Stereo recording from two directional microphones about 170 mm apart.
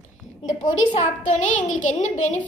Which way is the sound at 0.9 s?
45° left (ahead or behind).